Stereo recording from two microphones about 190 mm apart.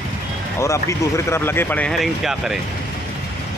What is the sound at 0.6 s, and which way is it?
Speech, 15° left (ahead or behind).